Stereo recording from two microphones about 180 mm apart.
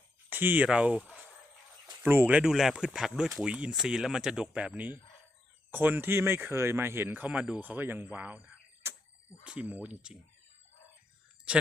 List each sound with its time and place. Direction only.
0.3 s speech: 10° right (ahead or behind)
8.8 s a sound: 15° right (ahead or behind)
9.4 s speech: 5° right (ahead or behind)